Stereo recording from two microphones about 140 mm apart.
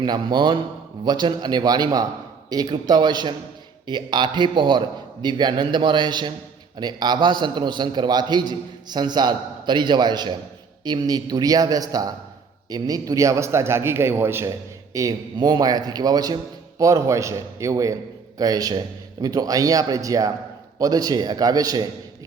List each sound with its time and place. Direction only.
0.0 s a man's voice: 30° right (ahead or behind); by 14.5 s 15° right (ahead or behind)
14.9 s a man's voice: 25° right (ahead or behind)